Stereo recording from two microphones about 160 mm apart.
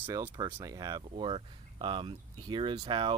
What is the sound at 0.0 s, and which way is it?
Speech, 15° right (ahead or behind).